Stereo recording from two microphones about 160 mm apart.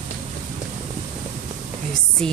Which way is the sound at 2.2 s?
5° left (ahead or behind).